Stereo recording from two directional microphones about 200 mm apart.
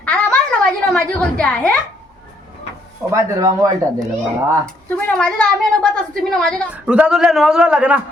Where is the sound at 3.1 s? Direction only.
15° right (ahead or behind).